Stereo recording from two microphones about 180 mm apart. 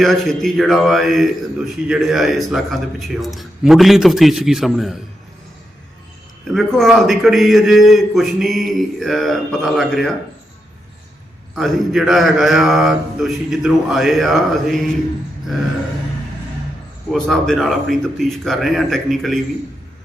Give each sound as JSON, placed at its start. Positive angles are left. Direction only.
{"t": 0.0, "sound": "a man's voice", "side_deg": 0}
{"t": 6.5, "sound": "a man's voice", "side_deg": 0}
{"t": 11.5, "sound": "a man's voice", "side_deg": 0}
{"t": 17.1, "sound": "a man's voice", "side_deg": 0}